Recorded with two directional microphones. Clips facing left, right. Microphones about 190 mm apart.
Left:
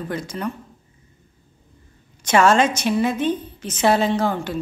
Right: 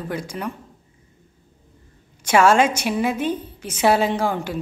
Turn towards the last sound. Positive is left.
turn(degrees=-10)  # may be behind; listen again after turning